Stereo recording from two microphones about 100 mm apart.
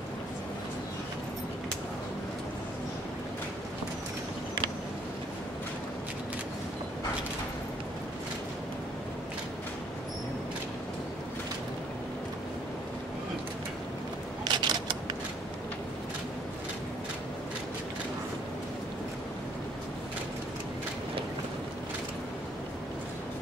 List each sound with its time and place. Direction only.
14.4 s camera: 45° right (ahead or behind)